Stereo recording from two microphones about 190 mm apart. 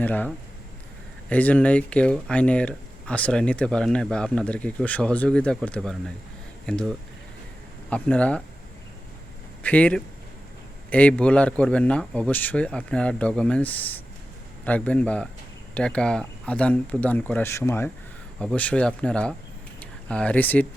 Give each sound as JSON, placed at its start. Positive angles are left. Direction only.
{"t": 0.0, "sound": "speech", "side_deg": 10}
{"t": 9.6, "sound": "speech", "side_deg": 5}